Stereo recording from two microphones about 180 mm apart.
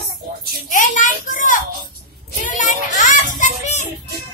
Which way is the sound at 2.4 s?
45° left (ahead or behind).